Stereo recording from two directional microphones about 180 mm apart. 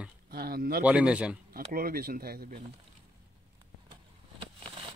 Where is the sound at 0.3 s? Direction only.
55° right (ahead or behind).